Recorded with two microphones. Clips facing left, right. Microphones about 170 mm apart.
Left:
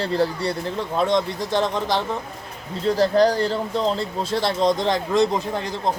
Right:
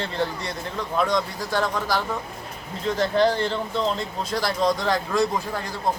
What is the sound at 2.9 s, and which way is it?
Speech, 35° left (ahead or behind).